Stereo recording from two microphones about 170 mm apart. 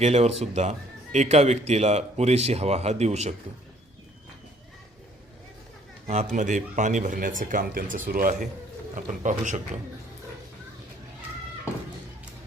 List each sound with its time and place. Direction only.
0.0 s speech: 40° right (ahead or behind)
6.1 s speech: 40° right (ahead or behind)